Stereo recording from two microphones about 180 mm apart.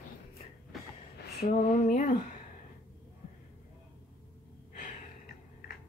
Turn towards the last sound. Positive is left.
turn(degrees=45)  # may be behind; listen again after turning